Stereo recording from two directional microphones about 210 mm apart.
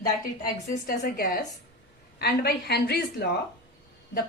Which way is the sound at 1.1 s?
45° left (ahead or behind).